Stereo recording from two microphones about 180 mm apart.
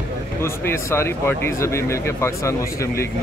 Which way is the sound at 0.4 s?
15° left (ahead or behind).